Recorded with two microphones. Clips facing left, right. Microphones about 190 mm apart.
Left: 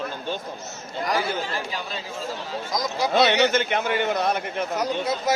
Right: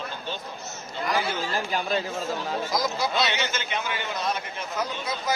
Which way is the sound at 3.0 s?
55° left (ahead or behind).